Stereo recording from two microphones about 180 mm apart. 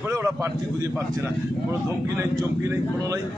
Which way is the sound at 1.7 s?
15° right (ahead or behind).